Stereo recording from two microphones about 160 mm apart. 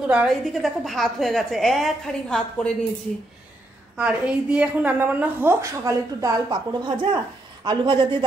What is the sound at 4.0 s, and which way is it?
A woman's voice, 5° right (ahead or behind).